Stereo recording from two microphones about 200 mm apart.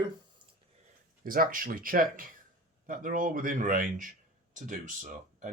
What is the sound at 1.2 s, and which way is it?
Speech, 45° right (ahead or behind).